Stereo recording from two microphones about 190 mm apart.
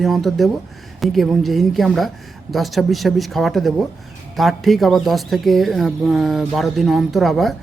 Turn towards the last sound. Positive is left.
turn(degrees=0)  # may be behind; listen again after turning